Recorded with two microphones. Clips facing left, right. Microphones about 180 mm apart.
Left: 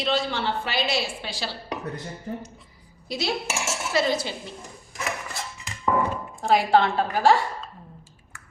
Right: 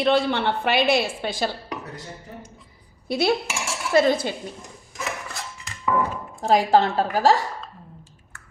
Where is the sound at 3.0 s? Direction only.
55° right (ahead or behind).